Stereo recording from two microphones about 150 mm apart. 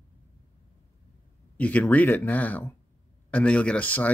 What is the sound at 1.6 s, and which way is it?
Speech, 10° left (ahead or behind).